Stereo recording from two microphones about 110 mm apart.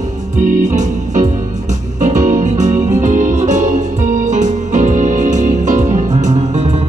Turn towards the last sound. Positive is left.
turn(degrees=-90)